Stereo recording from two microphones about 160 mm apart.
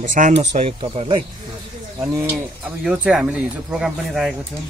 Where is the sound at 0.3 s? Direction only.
45° right (ahead or behind).